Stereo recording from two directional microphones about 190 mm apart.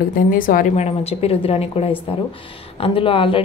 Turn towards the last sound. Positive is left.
turn(degrees=30)  # may be behind; listen again after turning